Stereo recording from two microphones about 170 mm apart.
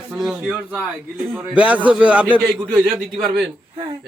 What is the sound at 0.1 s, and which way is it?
A man's voice, 5° right (ahead or behind).